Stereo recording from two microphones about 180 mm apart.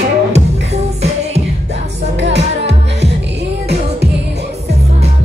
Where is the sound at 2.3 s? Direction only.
75° right (ahead or behind).